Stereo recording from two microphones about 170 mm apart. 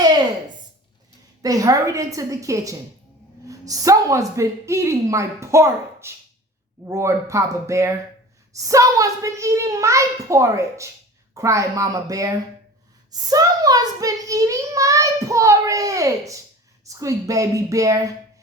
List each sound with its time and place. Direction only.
1.4 s a child's voice: 20° right (ahead or behind)
13.3 s a child's voice: 20° right (ahead or behind)